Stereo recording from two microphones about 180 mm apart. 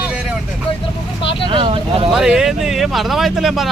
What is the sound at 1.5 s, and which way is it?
Speech, 30° right (ahead or behind).